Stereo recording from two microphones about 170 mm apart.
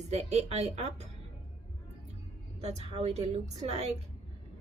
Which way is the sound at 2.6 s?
40° right (ahead or behind).